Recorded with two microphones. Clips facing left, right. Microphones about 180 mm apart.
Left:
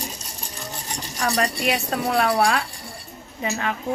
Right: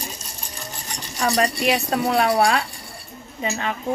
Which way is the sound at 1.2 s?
5° right (ahead or behind).